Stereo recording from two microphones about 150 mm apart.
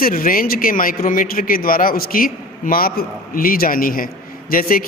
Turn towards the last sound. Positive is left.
turn(degrees=75)  # may be behind; listen again after turning